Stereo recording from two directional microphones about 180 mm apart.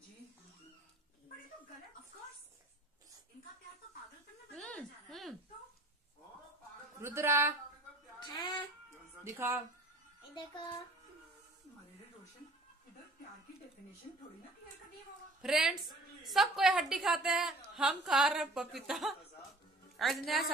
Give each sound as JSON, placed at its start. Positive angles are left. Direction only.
{"t": 4.6, "sound": "a sound", "side_deg": 5}
{"t": 7.0, "sound": "a woman's voice", "side_deg": -15}
{"t": 8.2, "sound": "music", "side_deg": 25}
{"t": 9.2, "sound": "a woman's voice", "side_deg": -15}
{"t": 15.4, "sound": "a woman's voice", "side_deg": -5}